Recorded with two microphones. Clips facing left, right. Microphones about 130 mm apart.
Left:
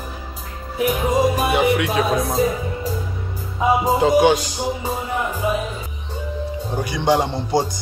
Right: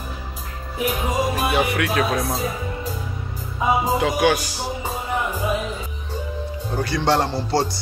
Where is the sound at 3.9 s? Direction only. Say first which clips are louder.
Left 4 dB; 30° left (ahead or behind).